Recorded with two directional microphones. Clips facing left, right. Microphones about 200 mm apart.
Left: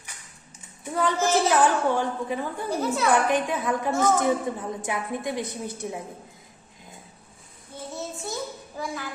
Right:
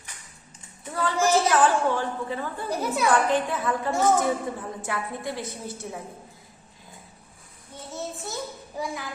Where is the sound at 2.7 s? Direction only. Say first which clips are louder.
Even; 15° right (ahead or behind).